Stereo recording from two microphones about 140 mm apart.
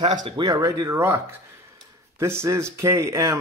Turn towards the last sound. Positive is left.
turn(degrees=-20)  # may be behind; listen again after turning